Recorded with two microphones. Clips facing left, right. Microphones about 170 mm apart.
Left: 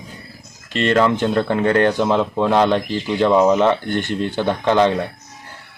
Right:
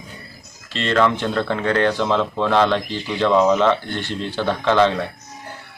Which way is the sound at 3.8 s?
50° left (ahead or behind).